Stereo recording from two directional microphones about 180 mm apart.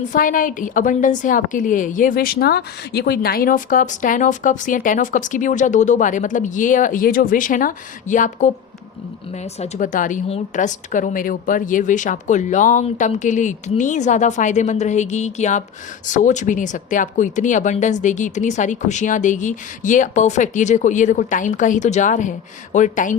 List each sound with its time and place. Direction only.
0.1 s a woman's voice: 50° left (ahead or behind)